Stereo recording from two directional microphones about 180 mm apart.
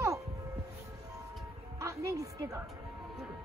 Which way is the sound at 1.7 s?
15° right (ahead or behind).